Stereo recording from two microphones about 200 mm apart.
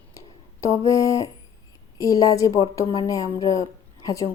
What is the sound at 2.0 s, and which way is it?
A woman's voice, 15° left (ahead or behind).